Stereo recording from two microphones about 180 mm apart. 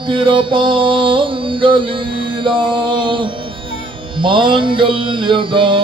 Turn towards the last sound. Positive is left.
turn(degrees=-30)  # may be behind; listen again after turning